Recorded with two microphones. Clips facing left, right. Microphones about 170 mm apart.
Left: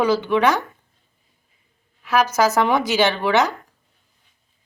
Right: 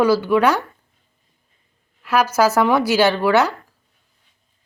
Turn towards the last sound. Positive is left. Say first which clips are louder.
# right 2 dB
turn(degrees=-10)  # may be behind; listen again after turning